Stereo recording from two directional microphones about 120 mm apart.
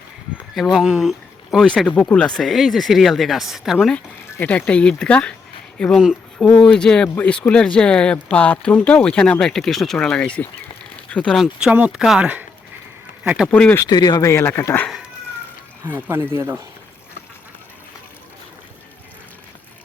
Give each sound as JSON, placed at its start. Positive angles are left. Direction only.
{"t": 0.5, "sound": "speech", "side_deg": 0}
{"t": 6.6, "sound": "speech", "side_deg": 5}
{"t": 11.3, "sound": "speech", "side_deg": -10}
{"t": 13.5, "sound": "speech", "side_deg": 10}
{"t": 13.7, "sound": "speech", "side_deg": 30}
{"t": 15.9, "sound": "speech", "side_deg": -20}